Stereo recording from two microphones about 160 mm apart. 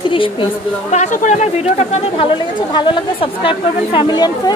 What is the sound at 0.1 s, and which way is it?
Speech, 30° left (ahead or behind).